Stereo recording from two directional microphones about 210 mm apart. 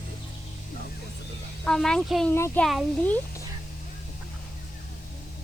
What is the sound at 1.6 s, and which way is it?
Speech, 5° left (ahead or behind).